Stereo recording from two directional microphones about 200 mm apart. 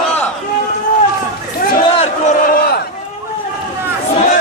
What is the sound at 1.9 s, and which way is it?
Crowd, 35° left (ahead or behind).